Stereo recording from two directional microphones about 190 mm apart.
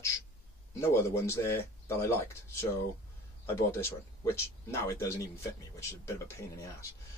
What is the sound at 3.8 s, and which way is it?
Speech, 15° left (ahead or behind).